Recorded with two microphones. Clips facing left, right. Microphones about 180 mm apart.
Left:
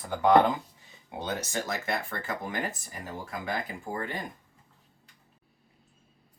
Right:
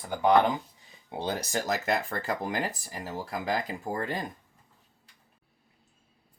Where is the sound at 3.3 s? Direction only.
40° right (ahead or behind).